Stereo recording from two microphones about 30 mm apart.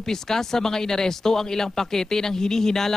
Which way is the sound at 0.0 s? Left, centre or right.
Centre.